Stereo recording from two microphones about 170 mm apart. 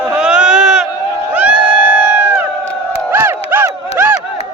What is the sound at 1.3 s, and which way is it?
Crowd, 10° right (ahead or behind).